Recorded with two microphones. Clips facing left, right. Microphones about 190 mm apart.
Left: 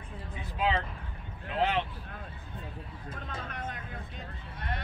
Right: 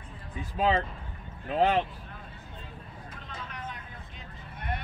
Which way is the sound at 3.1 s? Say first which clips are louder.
Left 4 dB; 50° left (ahead or behind).